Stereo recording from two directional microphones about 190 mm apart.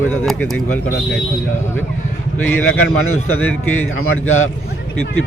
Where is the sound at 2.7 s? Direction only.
90° left.